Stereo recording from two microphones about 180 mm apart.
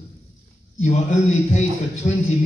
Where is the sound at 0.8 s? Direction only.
40° left (ahead or behind).